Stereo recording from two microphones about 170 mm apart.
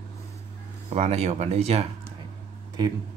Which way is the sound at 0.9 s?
40° right (ahead or behind).